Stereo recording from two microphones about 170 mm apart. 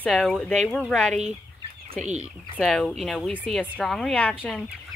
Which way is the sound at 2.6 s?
5° left (ahead or behind).